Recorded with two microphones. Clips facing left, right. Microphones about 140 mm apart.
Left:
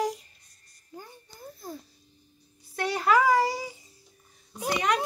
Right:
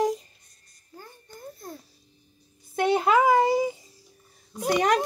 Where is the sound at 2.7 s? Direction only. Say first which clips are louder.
Right 3 dB; 20° right (ahead or behind).